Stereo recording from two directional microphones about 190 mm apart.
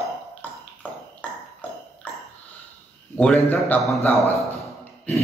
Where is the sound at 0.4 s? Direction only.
10° left (ahead or behind).